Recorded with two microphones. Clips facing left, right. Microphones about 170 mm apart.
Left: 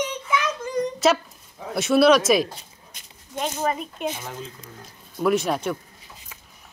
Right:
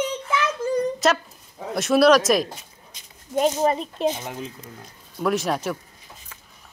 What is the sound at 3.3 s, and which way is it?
Speech, 30° right (ahead or behind).